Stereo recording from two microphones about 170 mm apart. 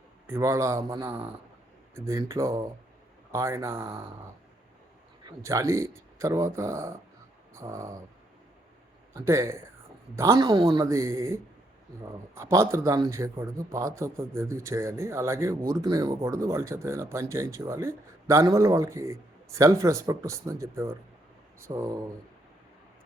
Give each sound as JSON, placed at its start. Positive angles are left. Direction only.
{"t": 0.3, "sound": "speech", "side_deg": -15}
{"t": 5.4, "sound": "speech", "side_deg": -15}
{"t": 9.1, "sound": "speech", "side_deg": -15}
{"t": 10.4, "sound": "speech", "side_deg": -30}
{"t": 10.8, "sound": "speech", "side_deg": -15}
{"t": 21.7, "sound": "speech", "side_deg": -30}